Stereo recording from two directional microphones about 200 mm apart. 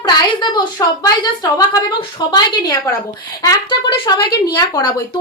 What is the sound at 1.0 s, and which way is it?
A woman's voice, 20° left (ahead or behind).